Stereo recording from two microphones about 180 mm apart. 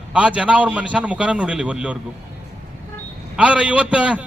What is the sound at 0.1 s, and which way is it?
A man's voice, 5° right (ahead or behind).